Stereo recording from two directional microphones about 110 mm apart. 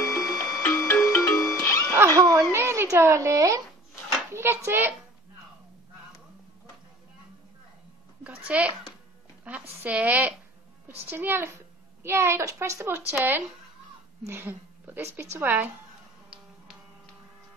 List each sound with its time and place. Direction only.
0.0 s clock: 30° left (ahead or behind)
1.0 s music: 25° left (ahead or behind)
2.1 s a sound: 30° right (ahead or behind)
2.5 s a child's voice: 25° right (ahead or behind)
8.2 s a woman's voice: 10° right (ahead or behind)
14.2 s a woman's voice: 20° right (ahead or behind)